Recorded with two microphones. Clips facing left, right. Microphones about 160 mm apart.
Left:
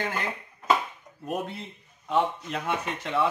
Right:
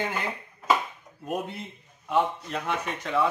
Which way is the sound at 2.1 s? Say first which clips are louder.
Even; centre (ahead or behind).